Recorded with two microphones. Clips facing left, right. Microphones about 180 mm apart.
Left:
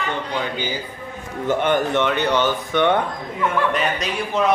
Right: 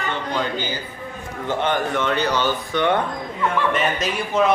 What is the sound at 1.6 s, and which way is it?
Speech, 50° left (ahead or behind).